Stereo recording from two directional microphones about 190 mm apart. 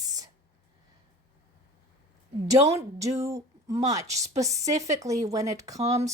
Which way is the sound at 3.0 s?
15° right (ahead or behind).